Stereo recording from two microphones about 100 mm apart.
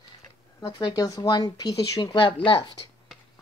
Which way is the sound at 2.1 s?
50° left (ahead or behind).